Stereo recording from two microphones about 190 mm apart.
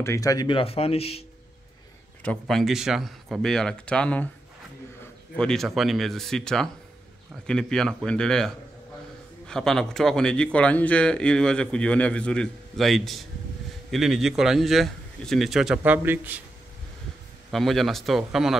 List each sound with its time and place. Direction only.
0.0 s speech: 15° left (ahead or behind)
2.2 s a man's voice: centre (ahead or behind)
5.3 s a man's voice: 5° left (ahead or behind)
17.5 s a man's voice: centre (ahead or behind)